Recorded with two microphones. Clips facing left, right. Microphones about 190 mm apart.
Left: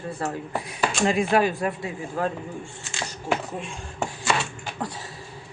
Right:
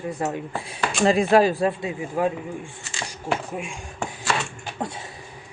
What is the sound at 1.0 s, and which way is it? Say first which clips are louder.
Speech: right 5 dB; 35° right (ahead or behind).